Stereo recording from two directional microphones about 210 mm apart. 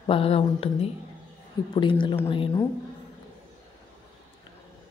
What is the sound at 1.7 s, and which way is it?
Speech, 20° left (ahead or behind).